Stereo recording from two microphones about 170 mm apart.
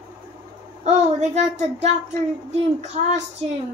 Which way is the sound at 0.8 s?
40° right (ahead or behind).